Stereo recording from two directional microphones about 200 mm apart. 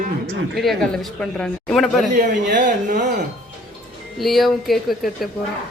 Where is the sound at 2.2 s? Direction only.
40° right (ahead or behind).